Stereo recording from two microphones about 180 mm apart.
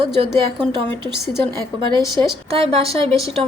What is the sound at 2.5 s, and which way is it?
Speech, 30° right (ahead or behind).